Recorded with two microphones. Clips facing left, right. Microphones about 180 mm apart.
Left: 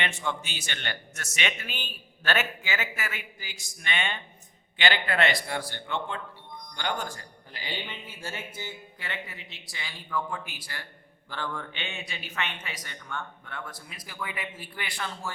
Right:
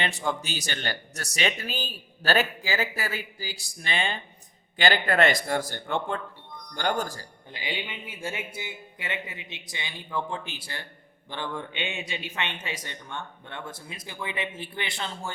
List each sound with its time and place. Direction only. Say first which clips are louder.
0.0 s a man's voice: right 3 dB; 35° right (ahead or behind)
7.5 s speech: right 3 dB; 15° right (ahead or behind)